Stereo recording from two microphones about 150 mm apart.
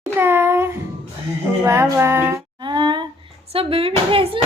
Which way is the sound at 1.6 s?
15° right (ahead or behind).